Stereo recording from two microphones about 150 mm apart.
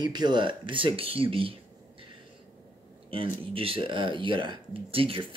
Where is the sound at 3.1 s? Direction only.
35° right (ahead or behind).